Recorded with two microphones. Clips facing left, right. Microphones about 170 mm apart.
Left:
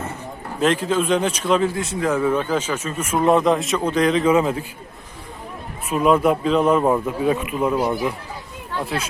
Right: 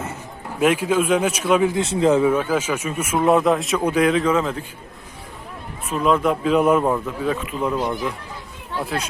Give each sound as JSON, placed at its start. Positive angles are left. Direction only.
{"t": 0.6, "sound": "speech", "side_deg": -10}
{"t": 1.7, "sound": "speech", "side_deg": -25}
{"t": 2.2, "sound": "speech", "side_deg": -5}
{"t": 4.2, "sound": "speech", "side_deg": 10}
{"t": 5.9, "sound": "speech", "side_deg": 10}
{"t": 6.4, "sound": "speech", "side_deg": -10}
{"t": 6.8, "sound": "speech", "side_deg": 15}